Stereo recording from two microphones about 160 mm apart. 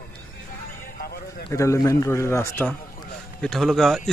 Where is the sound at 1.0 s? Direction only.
75° left (ahead or behind).